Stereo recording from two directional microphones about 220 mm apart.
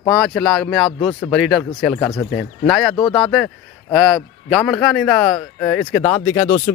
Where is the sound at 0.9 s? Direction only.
20° left (ahead or behind).